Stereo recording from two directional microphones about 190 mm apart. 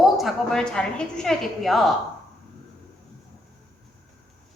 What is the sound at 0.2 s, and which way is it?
A woman's voice, centre (ahead or behind).